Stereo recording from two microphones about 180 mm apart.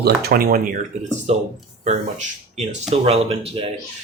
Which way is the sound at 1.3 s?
35° right (ahead or behind).